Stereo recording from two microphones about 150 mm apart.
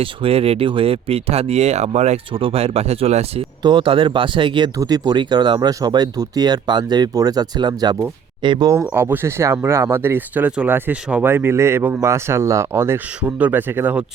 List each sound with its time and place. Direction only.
0.0 s speech: 40° right (ahead or behind)
3.6 s speech: 30° right (ahead or behind)
8.8 s speech: 15° right (ahead or behind)